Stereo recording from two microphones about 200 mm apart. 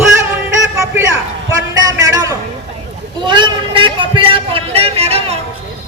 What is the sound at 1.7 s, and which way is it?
A man's voice, 20° right (ahead or behind).